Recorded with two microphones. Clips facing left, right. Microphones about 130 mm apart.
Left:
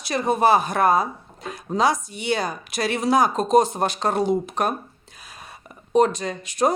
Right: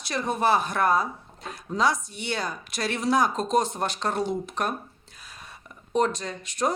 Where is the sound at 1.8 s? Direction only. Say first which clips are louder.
Left 4 dB; 10° left (ahead or behind).